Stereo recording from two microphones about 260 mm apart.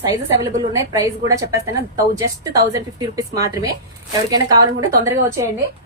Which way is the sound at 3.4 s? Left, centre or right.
Centre.